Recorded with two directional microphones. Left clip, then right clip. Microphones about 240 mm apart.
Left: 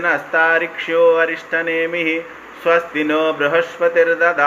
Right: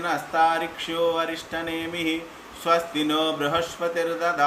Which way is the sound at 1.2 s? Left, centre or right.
Right.